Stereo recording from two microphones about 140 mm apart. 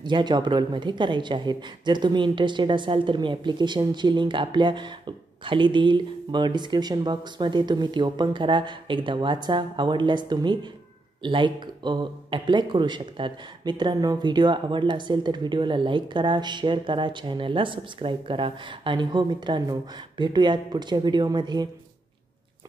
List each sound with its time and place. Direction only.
0.0 s speech: 30° right (ahead or behind)